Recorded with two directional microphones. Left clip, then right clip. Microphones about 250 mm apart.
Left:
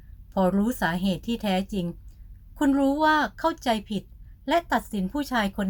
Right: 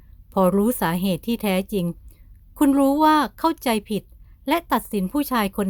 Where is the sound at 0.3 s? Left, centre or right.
Right.